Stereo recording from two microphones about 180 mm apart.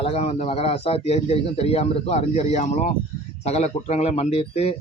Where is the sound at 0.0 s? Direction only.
35° left (ahead or behind).